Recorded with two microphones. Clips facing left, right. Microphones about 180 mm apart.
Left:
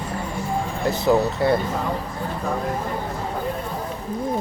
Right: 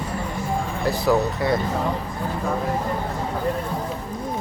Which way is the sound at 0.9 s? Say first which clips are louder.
Left 1 dB; 25° left (ahead or behind).